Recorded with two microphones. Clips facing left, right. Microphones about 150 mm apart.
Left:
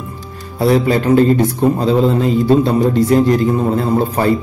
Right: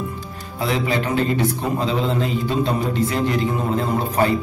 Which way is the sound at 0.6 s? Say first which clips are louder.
Left 8 dB; 40° left (ahead or behind).